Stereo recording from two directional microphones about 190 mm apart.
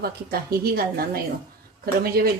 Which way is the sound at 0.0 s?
55° right (ahead or behind).